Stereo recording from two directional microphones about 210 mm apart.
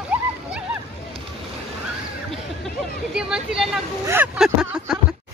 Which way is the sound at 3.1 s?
5° right (ahead or behind).